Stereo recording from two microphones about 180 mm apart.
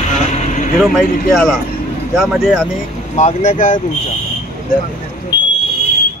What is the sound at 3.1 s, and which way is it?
Speech, 40° left (ahead or behind).